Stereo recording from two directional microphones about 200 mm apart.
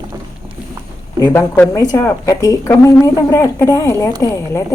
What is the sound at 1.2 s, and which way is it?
A woman's voice, 10° left (ahead or behind).